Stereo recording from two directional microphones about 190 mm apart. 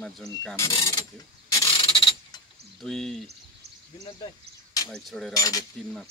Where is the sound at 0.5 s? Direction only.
20° left (ahead or behind).